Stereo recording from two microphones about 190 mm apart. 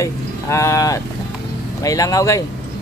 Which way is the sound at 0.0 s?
15° left (ahead or behind).